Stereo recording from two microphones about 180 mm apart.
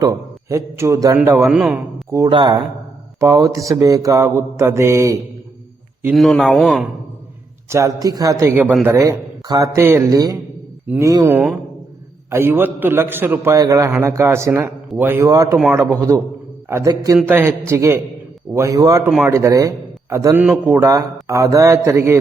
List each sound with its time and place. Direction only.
0.0 s a man's voice: 20° right (ahead or behind)
6.1 s speech: centre (ahead or behind)
7.7 s a man's voice: 15° right (ahead or behind)
10.8 s a man's voice: 10° right (ahead or behind)
15.5 s a man's voice: 5° right (ahead or behind)
16.6 s a man's voice: 15° right (ahead or behind)